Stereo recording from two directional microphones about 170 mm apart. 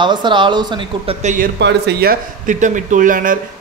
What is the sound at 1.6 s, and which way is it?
Speech, 90° right.